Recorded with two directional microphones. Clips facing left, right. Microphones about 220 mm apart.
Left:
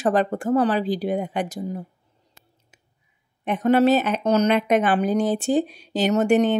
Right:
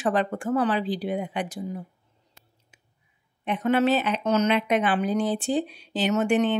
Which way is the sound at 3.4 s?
40° left (ahead or behind).